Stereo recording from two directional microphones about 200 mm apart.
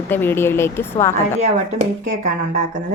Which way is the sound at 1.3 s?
30° right (ahead or behind).